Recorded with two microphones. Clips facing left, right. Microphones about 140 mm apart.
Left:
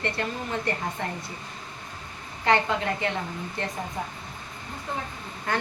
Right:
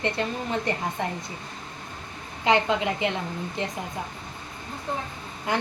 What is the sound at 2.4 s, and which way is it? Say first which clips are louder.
Speech: right 1 dB; 15° right (ahead or behind).